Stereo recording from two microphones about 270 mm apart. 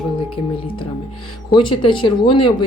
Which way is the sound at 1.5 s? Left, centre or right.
Centre.